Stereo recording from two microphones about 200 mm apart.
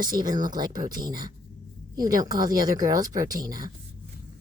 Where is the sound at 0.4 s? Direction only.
20° right (ahead or behind).